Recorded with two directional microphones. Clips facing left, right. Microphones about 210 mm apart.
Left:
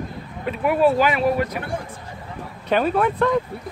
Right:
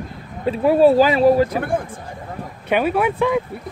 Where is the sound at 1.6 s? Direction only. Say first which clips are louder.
Right 6 dB; 50° right (ahead or behind).